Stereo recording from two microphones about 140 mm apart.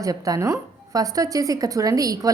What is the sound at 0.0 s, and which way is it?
A woman's voice, 25° right (ahead or behind).